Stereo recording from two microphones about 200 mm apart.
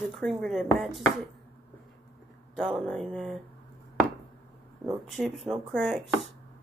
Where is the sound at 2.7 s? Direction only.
Centre (ahead or behind).